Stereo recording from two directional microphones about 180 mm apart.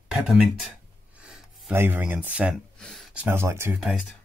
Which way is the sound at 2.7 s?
5° left (ahead or behind).